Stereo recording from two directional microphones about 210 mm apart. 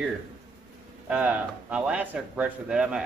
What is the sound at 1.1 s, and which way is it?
Speech, 10° right (ahead or behind).